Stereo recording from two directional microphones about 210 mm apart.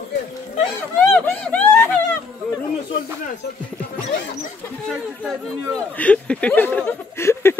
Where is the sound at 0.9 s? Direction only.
10° left (ahead or behind).